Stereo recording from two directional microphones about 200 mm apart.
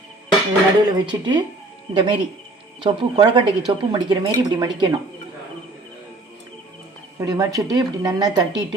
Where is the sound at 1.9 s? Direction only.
25° right (ahead or behind).